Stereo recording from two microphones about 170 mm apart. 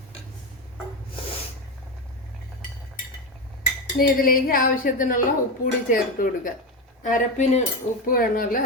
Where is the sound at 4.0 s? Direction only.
55° left (ahead or behind).